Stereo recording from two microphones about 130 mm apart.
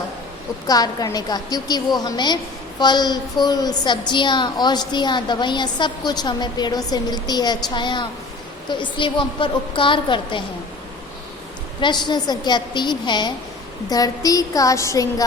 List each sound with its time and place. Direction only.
0.7 s a woman's voice: 30° left (ahead or behind)
11.8 s a woman's voice: 35° left (ahead or behind)
13.9 s a sound: 30° left (ahead or behind)